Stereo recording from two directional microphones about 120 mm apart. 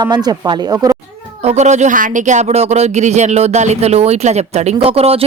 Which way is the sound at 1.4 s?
70° right (ahead or behind).